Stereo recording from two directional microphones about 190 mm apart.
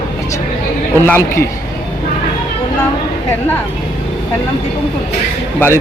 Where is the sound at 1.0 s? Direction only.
10° left (ahead or behind).